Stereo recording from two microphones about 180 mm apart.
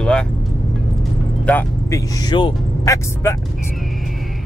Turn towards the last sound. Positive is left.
turn(degrees=15)  # may be behind; listen again after turning